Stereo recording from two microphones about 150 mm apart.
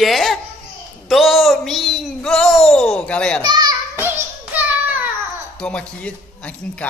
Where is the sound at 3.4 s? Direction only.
30° right (ahead or behind).